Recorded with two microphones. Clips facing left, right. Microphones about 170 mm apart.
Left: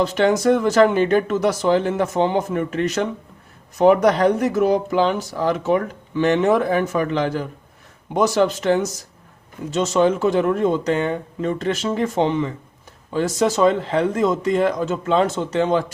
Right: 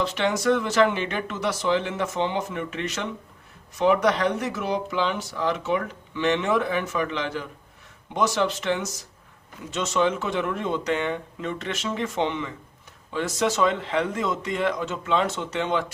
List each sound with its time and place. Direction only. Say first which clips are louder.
0.0 s speech: left 7 dB; 45° left (ahead or behind)